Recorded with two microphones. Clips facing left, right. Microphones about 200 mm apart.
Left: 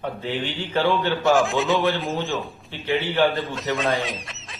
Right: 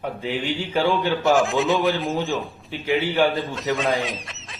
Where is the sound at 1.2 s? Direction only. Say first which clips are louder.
Even; centre (ahead or behind).